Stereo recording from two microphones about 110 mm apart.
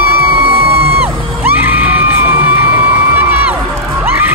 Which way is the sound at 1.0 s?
15° right (ahead or behind).